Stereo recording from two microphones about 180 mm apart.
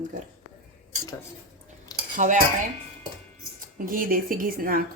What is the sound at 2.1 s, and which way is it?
Cutlery, 45° right (ahead or behind).